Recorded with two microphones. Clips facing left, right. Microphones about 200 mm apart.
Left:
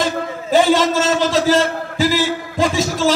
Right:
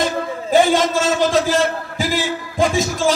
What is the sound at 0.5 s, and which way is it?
A man's voice, 50° right (ahead or behind).